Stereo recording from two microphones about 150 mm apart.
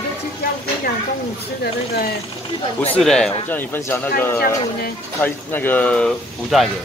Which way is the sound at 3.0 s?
5° left (ahead or behind).